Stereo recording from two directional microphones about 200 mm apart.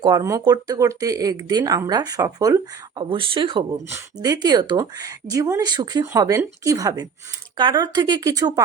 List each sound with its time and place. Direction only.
0.0 s speech: 20° right (ahead or behind)